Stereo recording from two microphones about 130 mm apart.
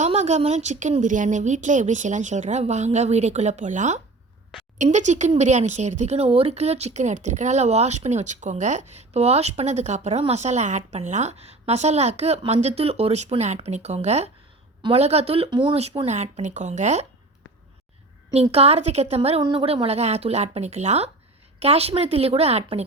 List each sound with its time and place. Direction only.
0.0 s speech: 60° right (ahead or behind)
1.0 s a woman's voice: 80° right; by 17.1 s 60° right (ahead or behind)
18.5 s a woman's voice: 50° right (ahead or behind)
19.4 s a woman's voice: 35° right (ahead or behind)
19.6 s a woman's voice: 50° right (ahead or behind)